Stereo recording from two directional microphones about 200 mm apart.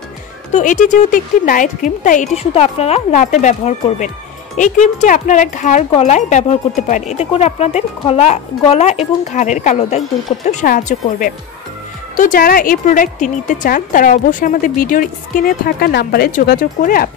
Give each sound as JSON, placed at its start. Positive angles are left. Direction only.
{"t": 0.5, "sound": "a woman's voice", "side_deg": 35}